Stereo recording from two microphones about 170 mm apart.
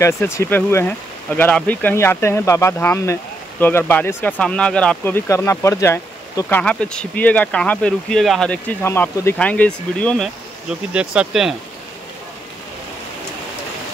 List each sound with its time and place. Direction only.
0.0 s speech: 15° left (ahead or behind)
10.9 s speech: 5° right (ahead or behind)